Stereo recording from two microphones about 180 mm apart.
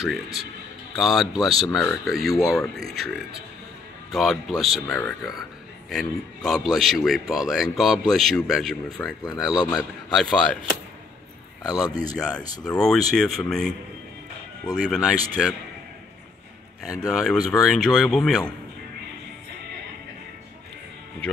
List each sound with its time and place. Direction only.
0.9 s a man's voice: centre (ahead or behind)
9.5 s a man's voice: 20° left (ahead or behind)
10.1 s a man's voice: centre (ahead or behind)
11.6 s a man's voice: 20° left (ahead or behind)
12.2 s a man's voice: 5° left (ahead or behind)
14.8 s a man's voice: 5° left (ahead or behind)
17.1 s a man's voice: centre (ahead or behind)